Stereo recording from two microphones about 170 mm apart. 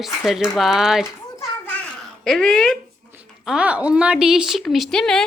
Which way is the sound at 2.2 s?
Centre (ahead or behind).